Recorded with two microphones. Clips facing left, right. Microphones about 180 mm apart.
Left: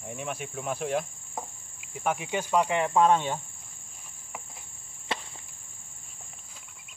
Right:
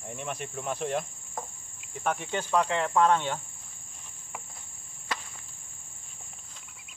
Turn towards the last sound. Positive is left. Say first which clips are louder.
# left 2 dB
turn(degrees=25)  # may be behind; listen again after turning